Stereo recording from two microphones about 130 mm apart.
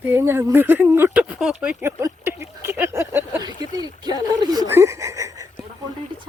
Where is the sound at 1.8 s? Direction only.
20° right (ahead or behind).